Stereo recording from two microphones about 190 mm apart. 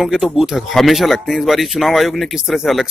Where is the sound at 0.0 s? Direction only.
Centre (ahead or behind).